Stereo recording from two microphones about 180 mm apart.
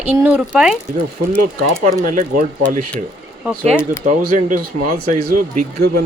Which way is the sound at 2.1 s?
50° right (ahead or behind).